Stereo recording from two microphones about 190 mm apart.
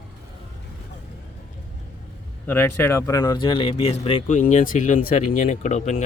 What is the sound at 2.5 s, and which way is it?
Speech, 10° left (ahead or behind).